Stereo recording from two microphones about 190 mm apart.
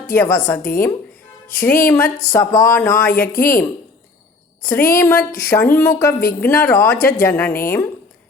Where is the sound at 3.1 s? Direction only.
50° left (ahead or behind).